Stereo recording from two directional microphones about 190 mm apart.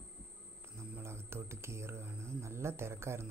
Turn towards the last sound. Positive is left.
turn(degrees=-15)  # may be behind; listen again after turning